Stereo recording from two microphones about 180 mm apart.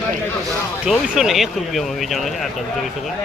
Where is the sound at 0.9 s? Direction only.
Centre (ahead or behind).